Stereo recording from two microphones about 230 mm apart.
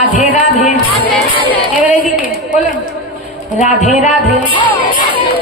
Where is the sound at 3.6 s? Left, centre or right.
Left.